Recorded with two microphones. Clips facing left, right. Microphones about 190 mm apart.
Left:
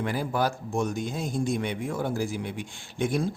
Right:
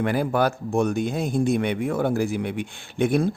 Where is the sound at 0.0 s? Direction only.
60° right (ahead or behind).